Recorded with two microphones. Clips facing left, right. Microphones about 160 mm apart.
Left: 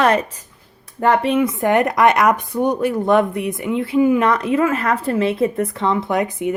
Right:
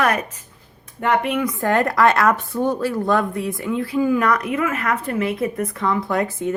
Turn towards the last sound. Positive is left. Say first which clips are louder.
# left 2 dB
turn(degrees=15)  # may be behind; listen again after turning